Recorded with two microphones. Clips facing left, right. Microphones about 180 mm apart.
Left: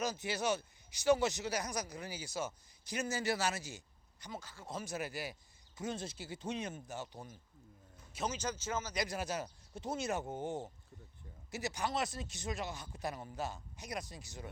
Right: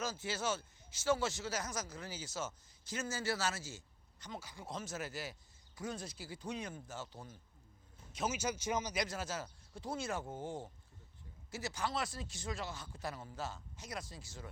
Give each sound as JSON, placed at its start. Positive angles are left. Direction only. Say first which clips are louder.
{"t": 0.0, "sound": "speech", "louder": "left 3 dB", "side_deg": 15}
{"t": 4.4, "sound": "speech", "louder": "right 1 dB", "side_deg": -10}
{"t": 4.7, "sound": "speech", "louder": "left 2 dB", "side_deg": 10}
{"t": 8.1, "sound": "speech", "louder": "right 1 dB", "side_deg": -5}
{"t": 9.0, "sound": "speech", "louder": "left 3 dB", "side_deg": 15}